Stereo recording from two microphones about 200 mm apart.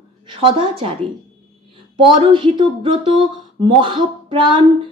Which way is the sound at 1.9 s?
25° right (ahead or behind).